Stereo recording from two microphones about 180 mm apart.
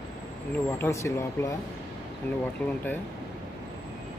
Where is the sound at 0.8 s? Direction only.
15° left (ahead or behind).